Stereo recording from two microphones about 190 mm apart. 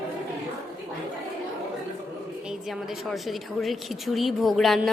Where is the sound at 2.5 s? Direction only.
Centre (ahead or behind).